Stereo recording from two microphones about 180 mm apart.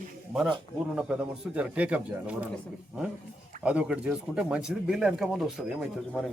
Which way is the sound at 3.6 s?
5° right (ahead or behind).